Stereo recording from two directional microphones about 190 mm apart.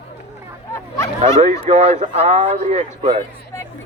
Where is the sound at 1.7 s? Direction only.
35° right (ahead or behind).